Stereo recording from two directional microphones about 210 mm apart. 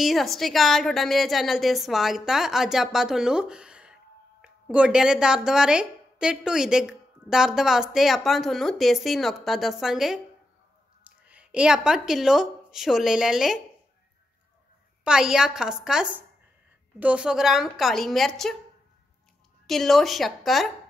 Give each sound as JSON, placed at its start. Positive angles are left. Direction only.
{"t": 0.0, "sound": "a woman's voice", "side_deg": 0}
{"t": 15.0, "sound": "a woman's voice", "side_deg": -5}
{"t": 19.6, "sound": "a woman's voice", "side_deg": 0}